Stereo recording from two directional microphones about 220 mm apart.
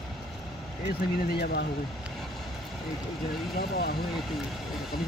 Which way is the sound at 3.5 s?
45° left (ahead or behind).